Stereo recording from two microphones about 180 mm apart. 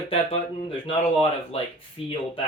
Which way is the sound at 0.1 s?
35° left (ahead or behind).